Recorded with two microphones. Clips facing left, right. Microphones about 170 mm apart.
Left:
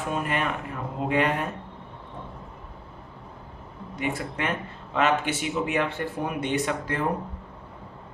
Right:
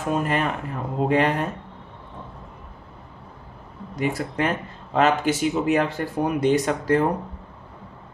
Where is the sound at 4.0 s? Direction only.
35° right (ahead or behind).